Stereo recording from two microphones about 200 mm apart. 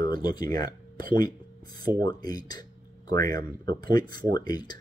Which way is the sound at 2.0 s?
20° left (ahead or behind).